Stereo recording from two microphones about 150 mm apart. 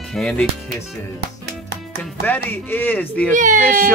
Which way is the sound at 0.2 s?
5° left (ahead or behind).